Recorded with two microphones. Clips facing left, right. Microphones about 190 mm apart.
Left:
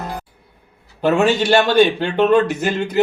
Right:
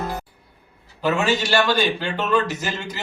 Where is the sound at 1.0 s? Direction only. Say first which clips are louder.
Left 6 dB; 55° left (ahead or behind).